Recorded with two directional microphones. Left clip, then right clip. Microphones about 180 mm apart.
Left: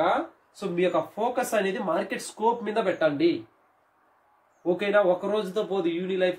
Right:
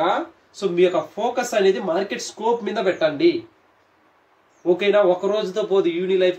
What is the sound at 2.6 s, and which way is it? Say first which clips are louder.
Speech: right 4 dB; 15° left (ahead or behind).